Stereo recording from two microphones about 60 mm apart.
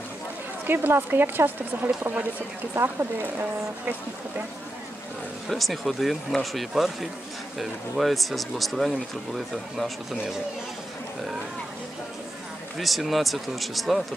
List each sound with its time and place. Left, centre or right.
0.7 s speech: right
5.5 s speech: centre
12.7 s speech: centre